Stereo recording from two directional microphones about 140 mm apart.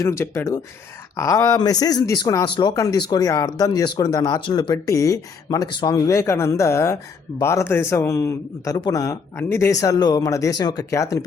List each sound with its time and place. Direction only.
0.0 s speech: 20° left (ahead or behind)